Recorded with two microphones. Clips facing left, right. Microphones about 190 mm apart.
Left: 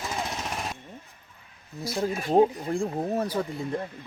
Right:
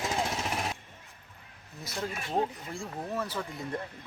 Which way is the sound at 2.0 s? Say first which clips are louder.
Left 9 dB; 40° left (ahead or behind).